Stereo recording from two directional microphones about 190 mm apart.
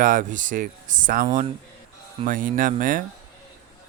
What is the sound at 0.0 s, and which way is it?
Speech, 45° right (ahead or behind).